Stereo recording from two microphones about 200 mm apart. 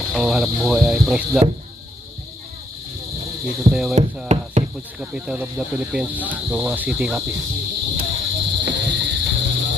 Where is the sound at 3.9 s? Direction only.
35° right (ahead or behind).